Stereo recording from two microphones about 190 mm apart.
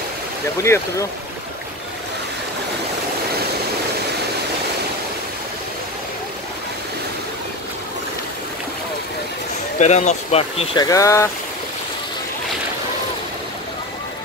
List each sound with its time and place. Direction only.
9.8 s speech: 40° left (ahead or behind)
10.8 s speech: 15° left (ahead or behind)